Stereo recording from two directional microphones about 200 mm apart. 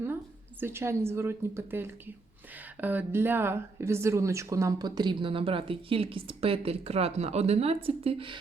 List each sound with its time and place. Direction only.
0.6 s a woman's voice: 10° right (ahead or behind)